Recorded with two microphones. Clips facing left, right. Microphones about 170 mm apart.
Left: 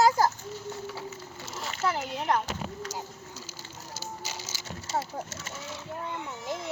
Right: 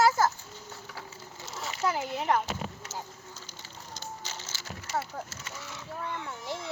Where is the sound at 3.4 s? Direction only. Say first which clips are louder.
Left 2 dB; 5° left (ahead or behind).